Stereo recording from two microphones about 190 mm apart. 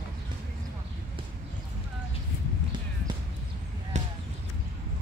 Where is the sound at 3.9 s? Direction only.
40° right (ahead or behind).